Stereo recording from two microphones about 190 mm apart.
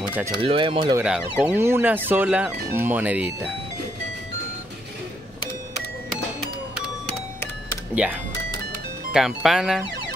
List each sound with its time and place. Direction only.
0.4 s speech: 25° right (ahead or behind)
0.9 s speech: 5° right (ahead or behind)
7.9 s speech: 5° right (ahead or behind)